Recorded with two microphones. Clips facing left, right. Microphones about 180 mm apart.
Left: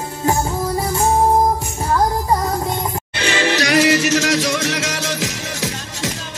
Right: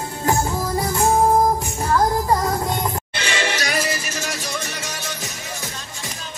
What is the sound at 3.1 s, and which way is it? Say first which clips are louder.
Music: left 9 dB; 65° left (ahead or behind).